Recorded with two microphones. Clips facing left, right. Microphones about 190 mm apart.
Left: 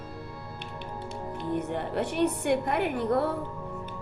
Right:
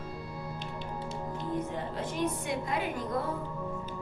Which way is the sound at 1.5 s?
70° left (ahead or behind).